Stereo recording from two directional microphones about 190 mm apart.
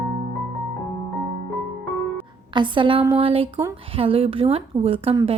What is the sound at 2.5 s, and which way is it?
Speech, 25° right (ahead or behind).